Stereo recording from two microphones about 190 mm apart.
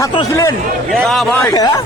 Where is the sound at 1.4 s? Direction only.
20° left (ahead or behind).